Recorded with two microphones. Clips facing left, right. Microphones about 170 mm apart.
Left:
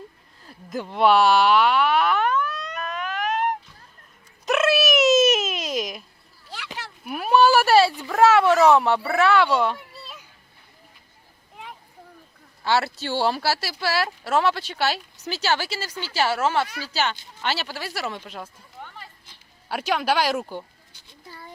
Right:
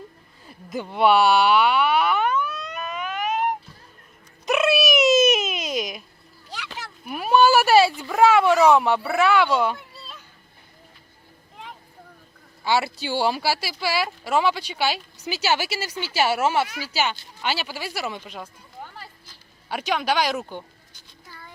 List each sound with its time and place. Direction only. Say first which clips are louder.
0.4 s boing: even; centre (ahead or behind)
4.4 s a sound: even; centre (ahead or behind)
6.7 s speech: left 2 dB; 5° left (ahead or behind)
9.7 s children playing: left 1 dB; 10° left (ahead or behind)
12.6 s speech: even; centre (ahead or behind)
19.6 s speech: left 1 dB; 5° left (ahead or behind)
21.2 s a sound: left 3 dB; 30° left (ahead or behind)